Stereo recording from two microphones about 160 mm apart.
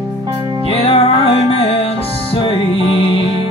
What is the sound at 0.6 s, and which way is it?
Music, 35° left (ahead or behind).